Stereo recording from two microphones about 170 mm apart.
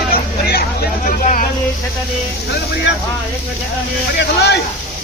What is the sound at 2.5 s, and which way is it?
Speech, 75° left (ahead or behind).